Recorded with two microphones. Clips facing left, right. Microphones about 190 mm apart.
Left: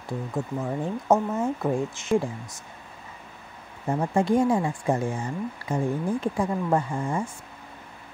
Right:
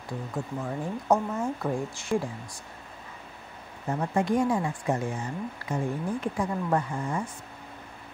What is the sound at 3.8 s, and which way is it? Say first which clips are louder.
A woman's voice: left 3 dB; 30° left (ahead or behind).